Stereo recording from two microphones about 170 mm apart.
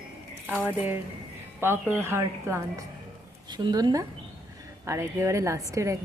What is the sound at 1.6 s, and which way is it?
Speech, 15° right (ahead or behind).